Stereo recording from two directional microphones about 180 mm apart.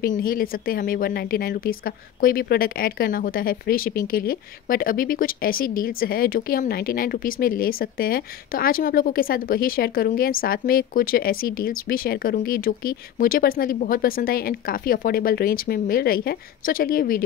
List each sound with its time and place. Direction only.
0.0 s speech: 50° left (ahead or behind)